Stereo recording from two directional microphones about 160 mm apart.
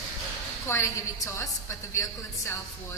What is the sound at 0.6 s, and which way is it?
A woman's voice, 20° left (ahead or behind).